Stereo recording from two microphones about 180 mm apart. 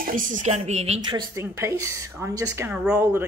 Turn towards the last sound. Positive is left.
turn(degrees=-15)  # may be behind; listen again after turning